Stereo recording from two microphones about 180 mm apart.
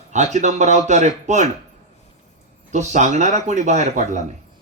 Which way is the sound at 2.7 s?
40° right (ahead or behind).